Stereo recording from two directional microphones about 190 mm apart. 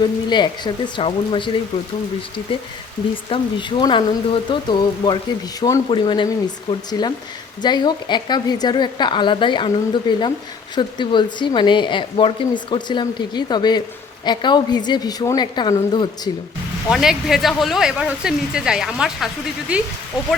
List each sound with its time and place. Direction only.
0.0 s speech: 25° left (ahead or behind)
16.9 s speech: 5° right (ahead or behind)